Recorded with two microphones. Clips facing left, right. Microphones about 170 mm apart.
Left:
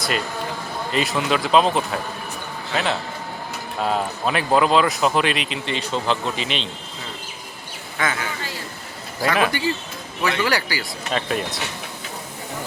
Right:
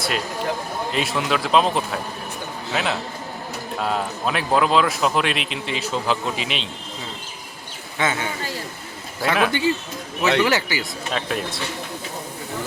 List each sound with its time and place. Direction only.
0.9 s speech: centre (ahead or behind)
7.9 s a man's voice: 25° right (ahead or behind)
9.2 s speech: centre (ahead or behind)
9.5 s a man's voice: 20° right (ahead or behind)
11.1 s speech: centre (ahead or behind)